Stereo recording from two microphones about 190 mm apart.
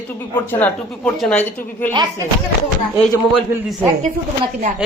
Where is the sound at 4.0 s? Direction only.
40° right (ahead or behind).